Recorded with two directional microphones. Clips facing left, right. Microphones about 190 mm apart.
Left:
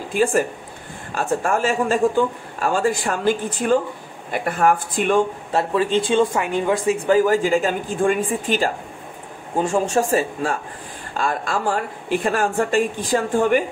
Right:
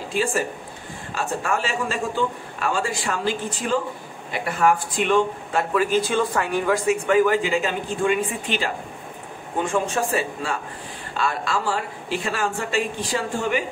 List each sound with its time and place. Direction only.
0.1 s speech: 50° left (ahead or behind)
5.5 s speech: 30° left (ahead or behind)
7.1 s a man's voice: 40° left (ahead or behind)